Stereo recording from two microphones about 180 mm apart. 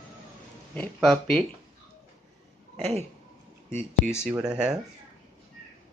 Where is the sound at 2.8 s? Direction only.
35° right (ahead or behind).